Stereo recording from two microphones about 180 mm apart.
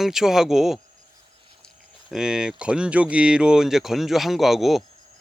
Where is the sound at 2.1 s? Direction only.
5° right (ahead or behind).